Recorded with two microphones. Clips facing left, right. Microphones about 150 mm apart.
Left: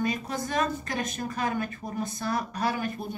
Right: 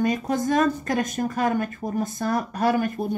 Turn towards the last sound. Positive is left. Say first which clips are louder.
# right 7 dB
turn(degrees=-45)  # may be behind; listen again after turning